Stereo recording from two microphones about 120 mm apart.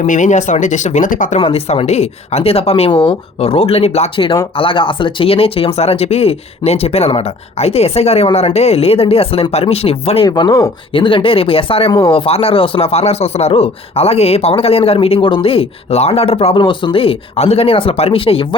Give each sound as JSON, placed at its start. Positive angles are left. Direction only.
{"t": 0.0, "sound": "speech", "side_deg": 90}
{"t": 1.4, "sound": "a woman's voice", "side_deg": 50}
{"t": 4.5, "sound": "a woman's voice", "side_deg": 45}
{"t": 10.2, "sound": "speech", "side_deg": 35}
{"t": 10.9, "sound": "speech", "side_deg": 45}
{"t": 11.9, "sound": "speech", "side_deg": 35}
{"t": 12.1, "sound": "speech", "side_deg": 55}